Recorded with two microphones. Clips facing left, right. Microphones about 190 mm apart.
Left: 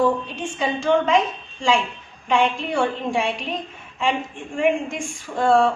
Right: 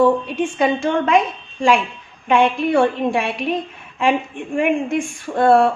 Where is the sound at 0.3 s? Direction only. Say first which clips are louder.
Right 7 dB; 60° right (ahead or behind).